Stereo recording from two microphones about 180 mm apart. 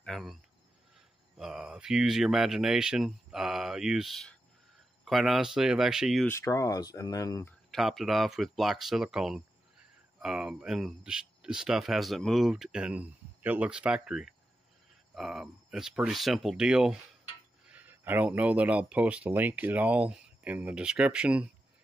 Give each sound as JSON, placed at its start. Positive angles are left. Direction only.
{"t": 0.0, "sound": "speech", "side_deg": 0}
{"t": 6.2, "sound": "speech", "side_deg": 15}
{"t": 7.7, "sound": "speech", "side_deg": 0}